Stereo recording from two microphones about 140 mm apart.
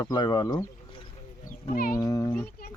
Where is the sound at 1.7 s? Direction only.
90° left.